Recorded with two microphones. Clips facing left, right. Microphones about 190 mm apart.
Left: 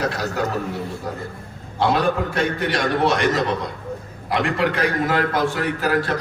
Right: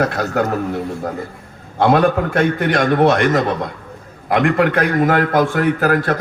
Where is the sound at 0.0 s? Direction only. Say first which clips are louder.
Right 6 dB; 55° right (ahead or behind).